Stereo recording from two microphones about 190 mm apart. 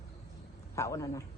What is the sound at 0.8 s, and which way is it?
Speech, 15° left (ahead or behind).